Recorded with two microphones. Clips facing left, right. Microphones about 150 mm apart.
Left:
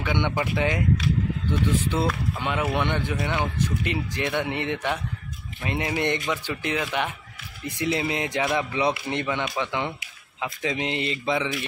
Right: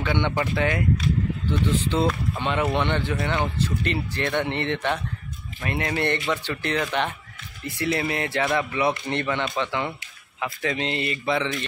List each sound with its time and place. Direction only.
0.0 s speech: 15° left (ahead or behind)
0.9 s speech: 5° left (ahead or behind)